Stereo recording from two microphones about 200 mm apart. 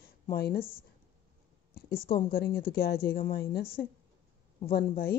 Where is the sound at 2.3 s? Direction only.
50° left (ahead or behind).